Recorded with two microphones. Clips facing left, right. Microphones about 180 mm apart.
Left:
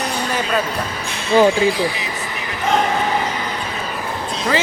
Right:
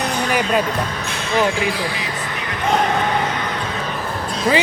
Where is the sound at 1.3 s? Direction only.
30° left (ahead or behind).